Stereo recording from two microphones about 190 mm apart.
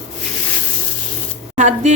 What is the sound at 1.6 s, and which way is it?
Speech, 40° right (ahead or behind).